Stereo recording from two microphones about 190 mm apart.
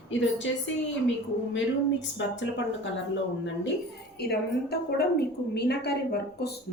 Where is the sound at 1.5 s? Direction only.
75° left (ahead or behind).